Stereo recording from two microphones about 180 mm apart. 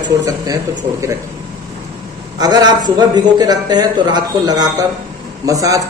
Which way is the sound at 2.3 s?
20° right (ahead or behind).